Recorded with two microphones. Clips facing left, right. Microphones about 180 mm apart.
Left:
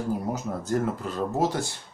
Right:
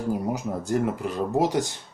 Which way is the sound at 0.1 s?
15° right (ahead or behind).